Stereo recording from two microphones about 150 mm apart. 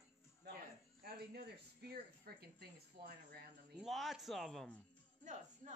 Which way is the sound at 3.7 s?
Centre (ahead or behind).